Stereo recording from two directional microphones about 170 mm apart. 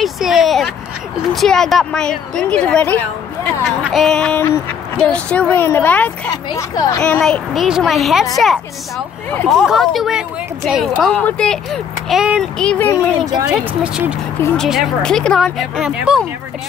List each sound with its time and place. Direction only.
0.0 s a sound: centre (ahead or behind)
1.3 s speech: centre (ahead or behind)
6.7 s speech: 25° left (ahead or behind)
7.0 s speech: 5° left (ahead or behind)
9.5 s speech: centre (ahead or behind)
13.5 s speech: 5° right (ahead or behind)